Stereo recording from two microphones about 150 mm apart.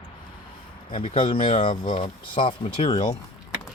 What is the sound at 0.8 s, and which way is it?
Speech, 50° left (ahead or behind).